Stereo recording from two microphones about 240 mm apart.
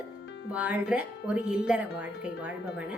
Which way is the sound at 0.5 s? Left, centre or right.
Centre.